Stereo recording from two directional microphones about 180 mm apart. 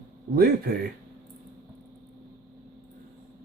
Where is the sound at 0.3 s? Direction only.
55° right (ahead or behind).